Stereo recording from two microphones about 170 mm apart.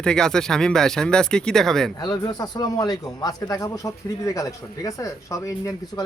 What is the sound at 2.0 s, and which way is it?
A man's voice, 25° left (ahead or behind).